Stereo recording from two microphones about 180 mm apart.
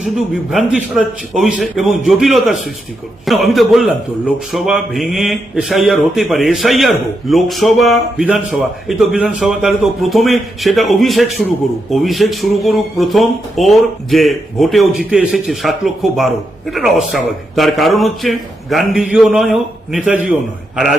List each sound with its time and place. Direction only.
0.5 s speech: 5° right (ahead or behind)